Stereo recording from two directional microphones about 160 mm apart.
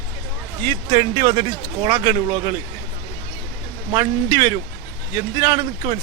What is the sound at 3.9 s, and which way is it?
Speech, 20° right (ahead or behind).